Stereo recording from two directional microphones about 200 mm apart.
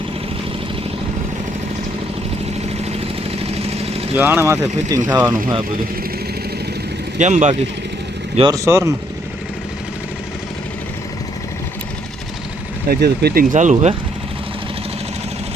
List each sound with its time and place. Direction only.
2.8 s vehicle: 30° right (ahead or behind)
4.2 s speech: 10° right (ahead or behind)
7.2 s speech: 35° right (ahead or behind)
8.4 s speech: 20° right (ahead or behind)
12.9 s speech: 50° right (ahead or behind)
13.5 s speech: 40° right (ahead or behind)